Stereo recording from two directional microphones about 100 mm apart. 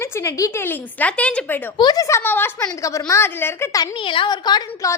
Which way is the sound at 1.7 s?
40° left (ahead or behind).